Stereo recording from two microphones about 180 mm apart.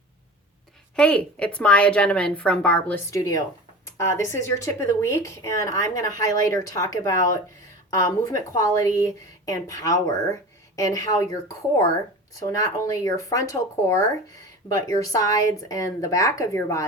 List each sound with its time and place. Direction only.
0.9 s speech: 5° left (ahead or behind)
3.1 s a woman's voice: 20° left (ahead or behind)